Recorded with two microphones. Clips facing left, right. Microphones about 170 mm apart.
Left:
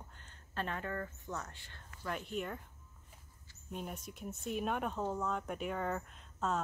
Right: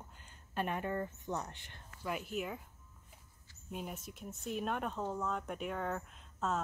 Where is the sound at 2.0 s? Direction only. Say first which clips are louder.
Right 1 dB; 5° right (ahead or behind).